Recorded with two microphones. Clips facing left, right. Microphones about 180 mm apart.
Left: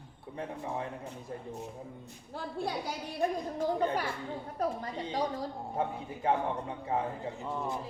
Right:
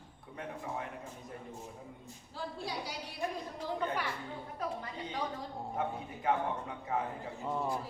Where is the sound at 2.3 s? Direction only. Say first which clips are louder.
Left 5 dB; 55° left (ahead or behind).